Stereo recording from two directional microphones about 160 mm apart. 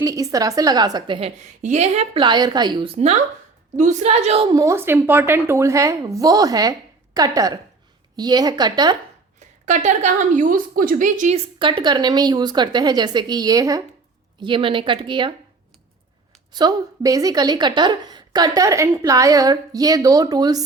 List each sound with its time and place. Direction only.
0.0 s a woman's voice: 20° right (ahead or behind)
1.6 s a woman's voice: 45° right (ahead or behind)
4.5 s a woman's voice: 20° right (ahead or behind)
9.4 s a woman's voice: 50° right (ahead or behind)
11.3 s a woman's voice: 35° right (ahead or behind)
16.5 s a woman's voice: 25° right (ahead or behind)